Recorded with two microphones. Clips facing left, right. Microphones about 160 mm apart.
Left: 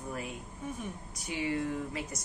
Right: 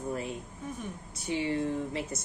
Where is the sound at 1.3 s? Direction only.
30° right (ahead or behind).